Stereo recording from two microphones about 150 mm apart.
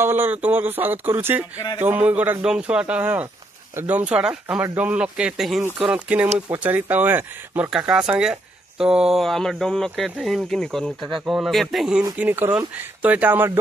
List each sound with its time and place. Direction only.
0.0 s speech: 15° right (ahead or behind)
12.2 s speech: 15° right (ahead or behind)